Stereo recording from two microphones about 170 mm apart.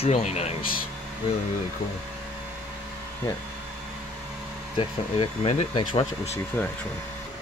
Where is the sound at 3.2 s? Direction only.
15° left (ahead or behind).